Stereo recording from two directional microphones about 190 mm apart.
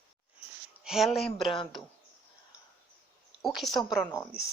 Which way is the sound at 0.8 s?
Centre (ahead or behind).